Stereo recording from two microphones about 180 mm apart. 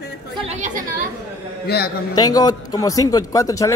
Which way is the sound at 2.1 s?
20° left (ahead or behind).